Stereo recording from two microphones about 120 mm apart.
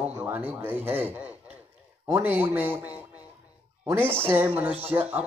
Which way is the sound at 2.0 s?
20° right (ahead or behind).